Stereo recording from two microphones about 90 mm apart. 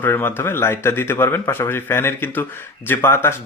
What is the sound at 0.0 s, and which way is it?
Speech, 25° left (ahead or behind).